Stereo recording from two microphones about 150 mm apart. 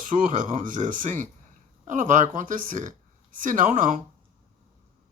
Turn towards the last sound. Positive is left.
turn(degrees=-60)  # may be behind; listen again after turning